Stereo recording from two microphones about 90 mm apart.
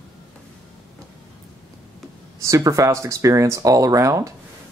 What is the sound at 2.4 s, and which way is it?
Speech, 35° right (ahead or behind).